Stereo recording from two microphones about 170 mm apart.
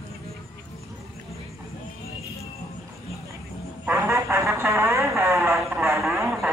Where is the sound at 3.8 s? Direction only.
15° right (ahead or behind).